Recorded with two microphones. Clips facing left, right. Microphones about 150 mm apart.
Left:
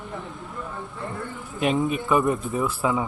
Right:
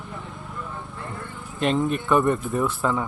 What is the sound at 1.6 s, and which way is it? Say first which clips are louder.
A man's voice: even; 5° left (ahead or behind).